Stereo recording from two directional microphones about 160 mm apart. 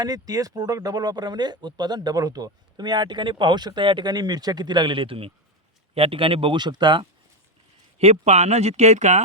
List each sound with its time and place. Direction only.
0.0 s speech: 25° right (ahead or behind)
7.9 s speech: 40° right (ahead or behind)